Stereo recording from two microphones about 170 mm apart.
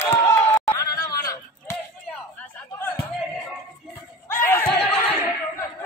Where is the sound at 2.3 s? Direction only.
10° left (ahead or behind).